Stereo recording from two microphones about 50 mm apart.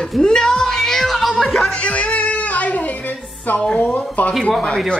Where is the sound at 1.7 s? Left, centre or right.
Left.